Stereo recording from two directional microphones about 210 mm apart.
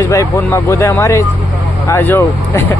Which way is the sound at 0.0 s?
15° left (ahead or behind).